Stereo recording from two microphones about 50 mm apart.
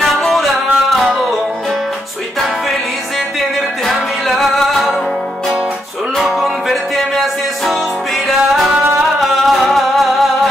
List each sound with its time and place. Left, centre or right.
0.3 s music: centre
3.8 s music: centre
6.1 s music: centre
9.2 s music: centre